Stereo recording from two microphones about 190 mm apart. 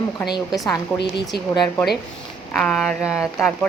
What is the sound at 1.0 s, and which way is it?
Speech, 60° left (ahead or behind).